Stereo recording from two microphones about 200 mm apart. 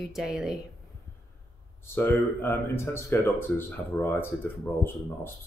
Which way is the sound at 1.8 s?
10° left (ahead or behind).